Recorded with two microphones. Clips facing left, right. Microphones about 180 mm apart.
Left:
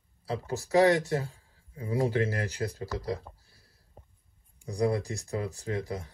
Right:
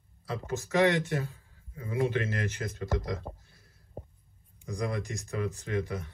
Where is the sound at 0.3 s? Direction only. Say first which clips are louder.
Left 3 dB; 35° left (ahead or behind).